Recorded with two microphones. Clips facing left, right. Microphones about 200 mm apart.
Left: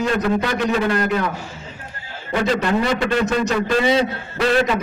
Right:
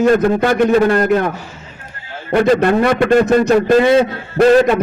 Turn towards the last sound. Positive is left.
turn(degrees=-45)  # may be behind; listen again after turning